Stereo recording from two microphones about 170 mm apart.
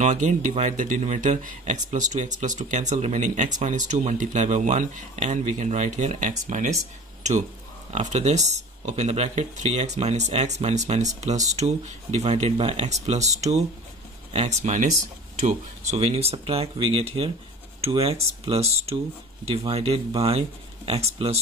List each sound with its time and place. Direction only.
0.0 s speech: 45° right (ahead or behind)
7.9 s speech: 40° right (ahead or behind)